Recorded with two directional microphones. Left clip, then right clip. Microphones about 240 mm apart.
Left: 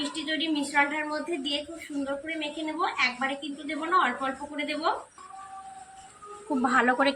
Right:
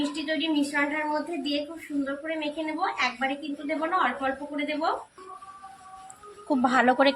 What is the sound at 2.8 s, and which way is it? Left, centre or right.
Speech, centre.